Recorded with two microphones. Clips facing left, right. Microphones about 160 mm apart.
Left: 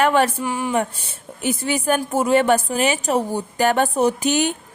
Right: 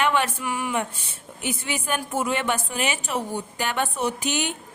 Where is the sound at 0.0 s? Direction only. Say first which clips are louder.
Left 6 dB; 40° left (ahead or behind).